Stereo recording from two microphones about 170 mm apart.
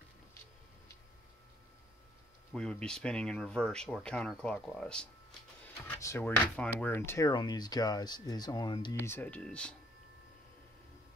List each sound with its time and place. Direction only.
2.5 s speech: 5° left (ahead or behind)
5.6 s speech: 15° left (ahead or behind)
8.9 s speech: 10° left (ahead or behind)